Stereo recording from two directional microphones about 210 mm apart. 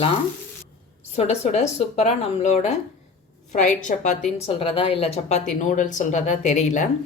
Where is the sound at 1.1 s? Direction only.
30° left (ahead or behind).